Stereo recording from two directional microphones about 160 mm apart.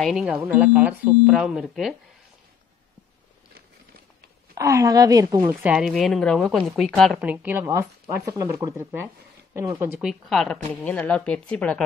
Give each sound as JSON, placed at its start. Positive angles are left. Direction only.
{"t": 0.0, "sound": "a woman's voice", "side_deg": -5}
{"t": 4.6, "sound": "a woman's voice", "side_deg": -20}
{"t": 5.5, "sound": "a woman's voice", "side_deg": -10}
{"t": 7.2, "sound": "speech", "side_deg": -10}
{"t": 9.9, "sound": "speech", "side_deg": 0}